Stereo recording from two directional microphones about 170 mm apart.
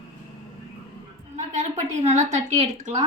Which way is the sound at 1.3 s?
45° right (ahead or behind).